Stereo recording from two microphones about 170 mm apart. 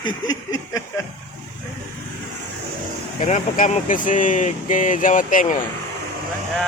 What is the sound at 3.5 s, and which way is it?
Speech, 50° left (ahead or behind).